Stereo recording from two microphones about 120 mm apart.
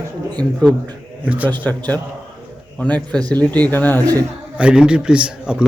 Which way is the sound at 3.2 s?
35° right (ahead or behind).